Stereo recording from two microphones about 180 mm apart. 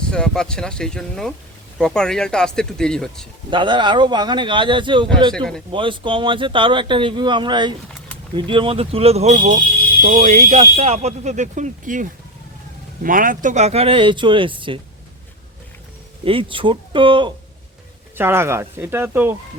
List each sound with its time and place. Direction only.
0.0 s speech: 5° left (ahead or behind)
3.5 s speech: 25° right (ahead or behind)
16.2 s speech: 30° right (ahead or behind)
18.2 s speech: 15° right (ahead or behind)